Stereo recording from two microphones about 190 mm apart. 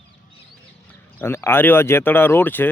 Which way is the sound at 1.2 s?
10° left (ahead or behind).